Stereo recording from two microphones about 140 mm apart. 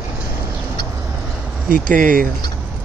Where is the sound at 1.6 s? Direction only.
75° right (ahead or behind).